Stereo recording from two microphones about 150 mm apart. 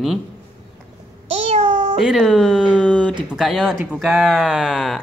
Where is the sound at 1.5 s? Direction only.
50° right (ahead or behind).